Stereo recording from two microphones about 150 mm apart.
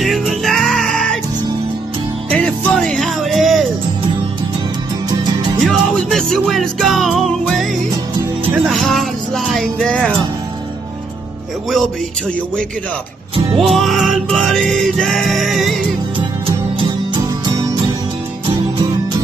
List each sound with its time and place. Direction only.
0.0 s music: centre (ahead or behind)
2.3 s music: 5° left (ahead or behind)
5.6 s music: 5° left (ahead or behind)
8.6 s music: centre (ahead or behind)
13.6 s music: centre (ahead or behind)
16.4 s music: 35° right (ahead or behind)